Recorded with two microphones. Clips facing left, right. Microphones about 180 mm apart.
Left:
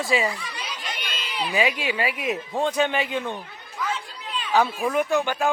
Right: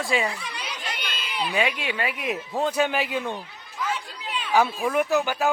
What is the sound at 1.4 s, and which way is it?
A man's voice, 5° left (ahead or behind).